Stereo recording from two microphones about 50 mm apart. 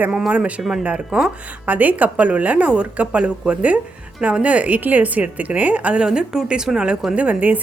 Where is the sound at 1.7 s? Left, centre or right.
Right.